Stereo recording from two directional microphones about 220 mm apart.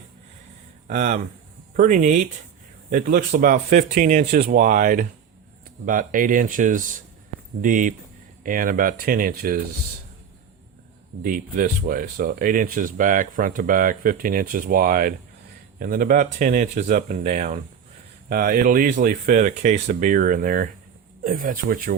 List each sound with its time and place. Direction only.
0.9 s speech: 35° right (ahead or behind)
11.2 s speech: 40° right (ahead or behind)